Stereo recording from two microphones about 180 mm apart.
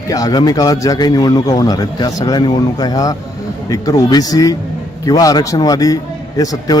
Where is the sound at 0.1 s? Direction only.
20° left (ahead or behind).